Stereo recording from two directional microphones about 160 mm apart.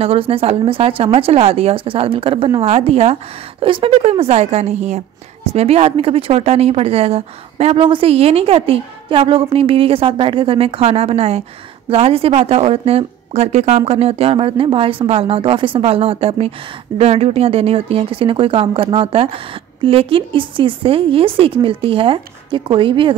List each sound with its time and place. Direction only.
0.0 s a woman's voice: 35° right (ahead or behind)